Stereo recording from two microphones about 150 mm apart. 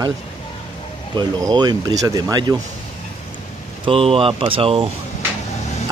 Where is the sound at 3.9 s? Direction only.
40° right (ahead or behind).